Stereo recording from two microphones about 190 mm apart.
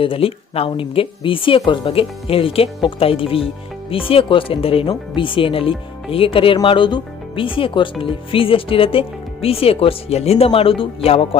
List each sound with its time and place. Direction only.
0.0 s a woman's voice: 30° left (ahead or behind)